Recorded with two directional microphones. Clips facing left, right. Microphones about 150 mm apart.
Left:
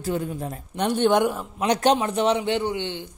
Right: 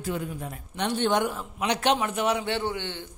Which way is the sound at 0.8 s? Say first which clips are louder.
Left 5 dB; 50° left (ahead or behind).